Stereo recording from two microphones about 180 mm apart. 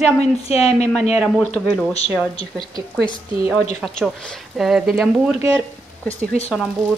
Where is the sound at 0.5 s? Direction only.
35° left (ahead or behind).